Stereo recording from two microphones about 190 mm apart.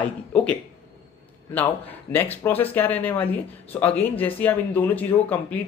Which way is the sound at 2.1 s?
10° left (ahead or behind).